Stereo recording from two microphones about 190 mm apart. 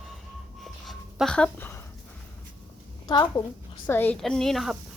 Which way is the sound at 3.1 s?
20° left (ahead or behind).